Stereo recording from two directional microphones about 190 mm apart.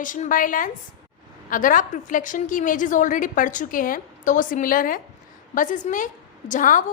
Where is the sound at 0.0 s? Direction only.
45° left (ahead or behind).